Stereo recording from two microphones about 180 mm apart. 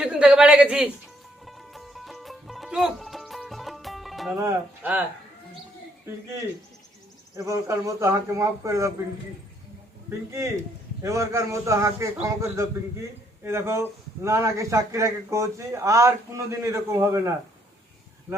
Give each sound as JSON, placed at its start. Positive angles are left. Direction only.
{"t": 0.0, "sound": "a man's voice", "side_deg": -5}
{"t": 1.5, "sound": "music", "side_deg": 0}
{"t": 4.4, "sound": "a man's voice", "side_deg": -15}
{"t": 7.3, "sound": "a man's voice", "side_deg": -15}
{"t": 10.1, "sound": "a man's voice", "side_deg": -15}